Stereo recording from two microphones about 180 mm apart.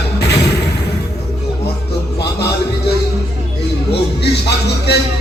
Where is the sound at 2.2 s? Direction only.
65° left (ahead or behind).